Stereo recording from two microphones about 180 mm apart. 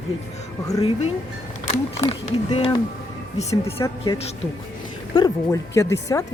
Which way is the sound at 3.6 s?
15° left (ahead or behind).